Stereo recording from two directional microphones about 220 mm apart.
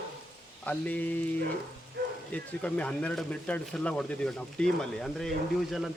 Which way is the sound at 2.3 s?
5° left (ahead or behind).